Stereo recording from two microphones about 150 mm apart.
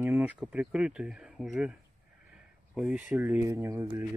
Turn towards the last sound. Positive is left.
turn(degrees=-20)  # may be behind; listen again after turning